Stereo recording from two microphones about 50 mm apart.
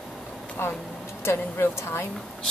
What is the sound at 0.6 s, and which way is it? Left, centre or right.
Speech, left.